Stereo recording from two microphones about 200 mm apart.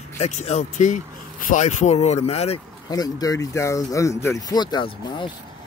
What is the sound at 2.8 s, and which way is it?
Speech, 20° left (ahead or behind).